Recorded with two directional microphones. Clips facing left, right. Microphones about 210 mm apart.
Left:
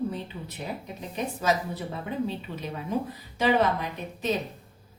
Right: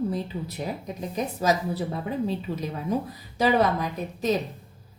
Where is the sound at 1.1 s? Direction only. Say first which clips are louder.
Right 2 dB; 35° right (ahead or behind).